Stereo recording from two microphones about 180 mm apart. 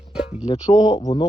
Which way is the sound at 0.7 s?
20° left (ahead or behind).